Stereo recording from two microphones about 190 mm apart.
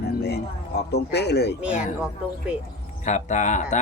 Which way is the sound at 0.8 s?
60° left (ahead or behind).